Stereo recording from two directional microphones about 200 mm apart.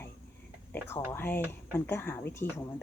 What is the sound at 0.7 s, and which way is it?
Speech, 10° left (ahead or behind).